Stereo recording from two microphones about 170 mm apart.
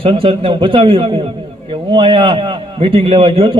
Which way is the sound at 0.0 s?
30° right (ahead or behind).